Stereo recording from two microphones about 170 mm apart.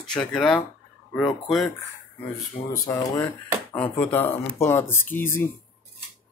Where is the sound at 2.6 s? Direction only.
45° left (ahead or behind).